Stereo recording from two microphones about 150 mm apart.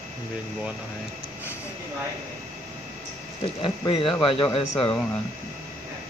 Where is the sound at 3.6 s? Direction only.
35° left (ahead or behind).